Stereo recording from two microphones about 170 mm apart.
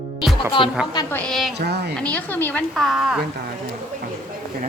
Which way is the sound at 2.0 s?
10° left (ahead or behind).